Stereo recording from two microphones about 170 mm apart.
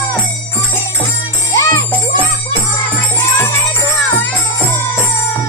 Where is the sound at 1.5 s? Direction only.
15° left (ahead or behind).